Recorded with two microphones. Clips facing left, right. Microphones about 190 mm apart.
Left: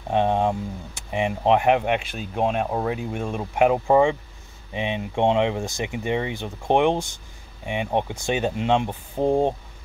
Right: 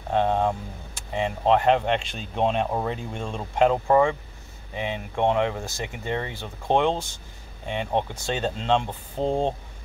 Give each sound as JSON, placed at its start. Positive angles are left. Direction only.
{"t": 0.1, "sound": "speech", "side_deg": 15}